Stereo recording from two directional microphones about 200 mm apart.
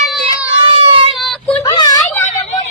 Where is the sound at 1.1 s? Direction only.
Centre (ahead or behind).